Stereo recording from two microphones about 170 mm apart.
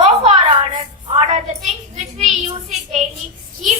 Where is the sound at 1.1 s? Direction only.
40° right (ahead or behind).